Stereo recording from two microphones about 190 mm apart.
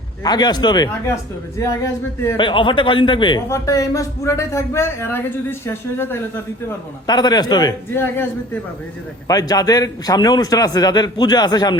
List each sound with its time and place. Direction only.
0.3 s a man's voice: 20° left (ahead or behind)
2.4 s a man's voice: 25° left (ahead or behind)